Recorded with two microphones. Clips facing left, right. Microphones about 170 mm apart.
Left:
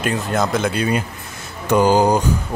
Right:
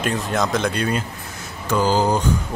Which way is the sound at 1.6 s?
15° left (ahead or behind).